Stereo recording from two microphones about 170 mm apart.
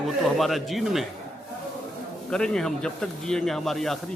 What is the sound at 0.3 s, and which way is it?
Speech, centre (ahead or behind).